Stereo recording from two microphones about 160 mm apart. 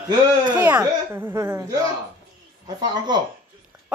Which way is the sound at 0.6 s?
10° right (ahead or behind).